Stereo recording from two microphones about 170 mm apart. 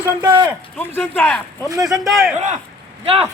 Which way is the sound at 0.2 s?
25° right (ahead or behind).